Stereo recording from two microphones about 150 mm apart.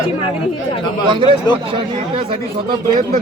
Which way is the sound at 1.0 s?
35° right (ahead or behind).